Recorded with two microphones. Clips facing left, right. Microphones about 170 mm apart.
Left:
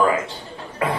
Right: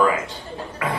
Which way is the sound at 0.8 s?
30° left (ahead or behind).